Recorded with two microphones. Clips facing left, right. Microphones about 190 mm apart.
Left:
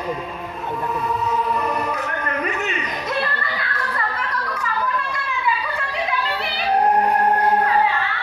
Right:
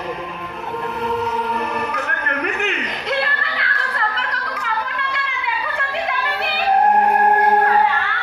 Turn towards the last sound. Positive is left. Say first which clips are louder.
# right 1 dB
turn(degrees=-60)  # may be behind; listen again after turning